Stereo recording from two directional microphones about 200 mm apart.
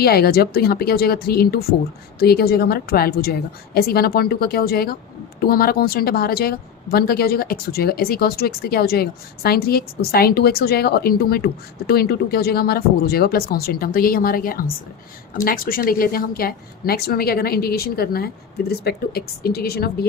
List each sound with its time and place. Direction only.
0.0 s a woman's voice: 50° left (ahead or behind)